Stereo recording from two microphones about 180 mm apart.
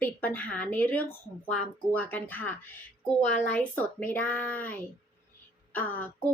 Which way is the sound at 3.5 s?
10° left (ahead or behind).